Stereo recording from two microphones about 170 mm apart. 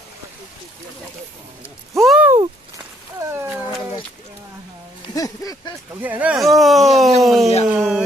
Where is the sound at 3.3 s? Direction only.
15° right (ahead or behind).